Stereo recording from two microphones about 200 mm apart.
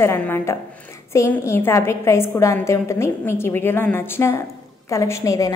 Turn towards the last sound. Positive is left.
turn(degrees=15)  # may be behind; listen again after turning